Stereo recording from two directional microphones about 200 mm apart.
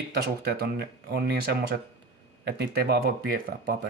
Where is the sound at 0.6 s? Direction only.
50° right (ahead or behind).